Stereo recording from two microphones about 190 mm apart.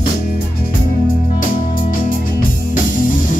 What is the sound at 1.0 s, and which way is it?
Music, 45° left (ahead or behind).